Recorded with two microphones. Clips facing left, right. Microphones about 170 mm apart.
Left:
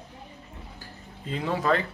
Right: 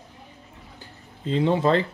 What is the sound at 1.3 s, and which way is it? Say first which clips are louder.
Speech: right 5 dB; 25° right (ahead or behind).